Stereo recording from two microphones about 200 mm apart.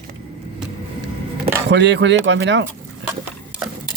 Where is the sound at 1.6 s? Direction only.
60° right (ahead or behind).